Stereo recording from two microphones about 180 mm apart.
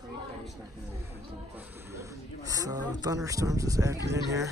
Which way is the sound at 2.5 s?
20° right (ahead or behind).